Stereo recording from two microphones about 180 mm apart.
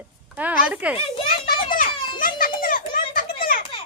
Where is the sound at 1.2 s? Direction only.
55° left (ahead or behind).